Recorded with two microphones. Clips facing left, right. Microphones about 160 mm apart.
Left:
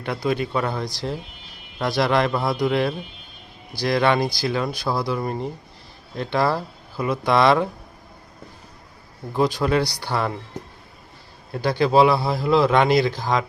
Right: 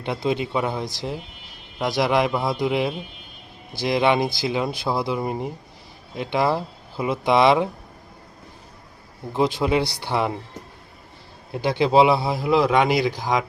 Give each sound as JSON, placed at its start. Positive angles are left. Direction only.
{"t": 0.0, "sound": "speech", "side_deg": -20}
{"t": 9.3, "sound": "speech", "side_deg": -20}
{"t": 11.5, "sound": "speech", "side_deg": -20}